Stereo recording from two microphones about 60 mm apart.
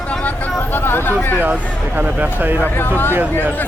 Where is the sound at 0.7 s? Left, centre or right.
Left.